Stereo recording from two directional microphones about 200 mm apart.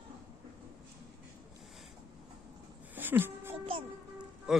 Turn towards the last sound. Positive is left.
turn(degrees=-5)  # may be behind; listen again after turning